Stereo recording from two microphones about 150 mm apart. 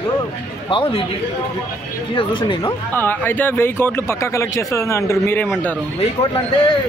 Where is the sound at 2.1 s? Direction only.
35° left (ahead or behind).